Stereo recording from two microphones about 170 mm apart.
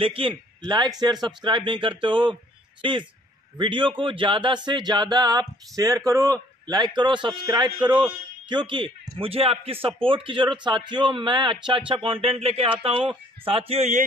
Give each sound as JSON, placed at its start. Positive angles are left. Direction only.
{"t": 0.0, "sound": "a man's voice", "side_deg": -30}